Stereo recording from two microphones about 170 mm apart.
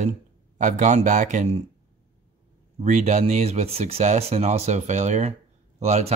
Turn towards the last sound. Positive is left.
turn(degrees=-40)  # may be behind; listen again after turning